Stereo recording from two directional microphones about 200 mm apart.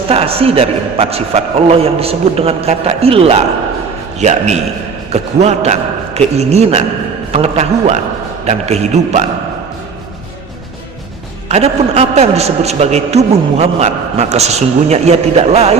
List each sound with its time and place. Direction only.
0.1 s a man's voice: 30° right (ahead or behind)
11.4 s a man's voice: 30° right (ahead or behind)